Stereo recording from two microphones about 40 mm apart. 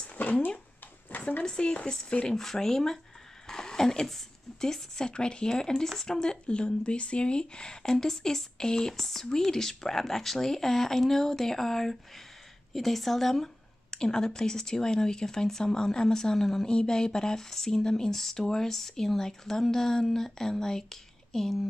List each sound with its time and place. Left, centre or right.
0.2 s speech: left
1.4 s speech: left
6.4 s speech: left; by 13.9 s centre
13.9 s speech: centre